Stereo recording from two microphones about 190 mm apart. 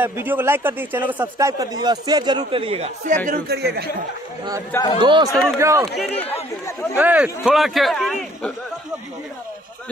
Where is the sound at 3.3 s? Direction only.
55° right (ahead or behind).